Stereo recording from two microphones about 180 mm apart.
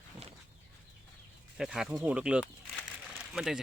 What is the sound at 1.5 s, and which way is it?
Speech, 5° right (ahead or behind).